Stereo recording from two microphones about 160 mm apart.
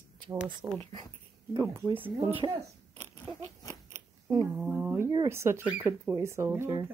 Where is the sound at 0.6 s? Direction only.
5° right (ahead or behind).